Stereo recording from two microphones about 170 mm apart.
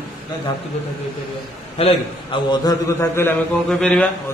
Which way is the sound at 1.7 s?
30° left (ahead or behind).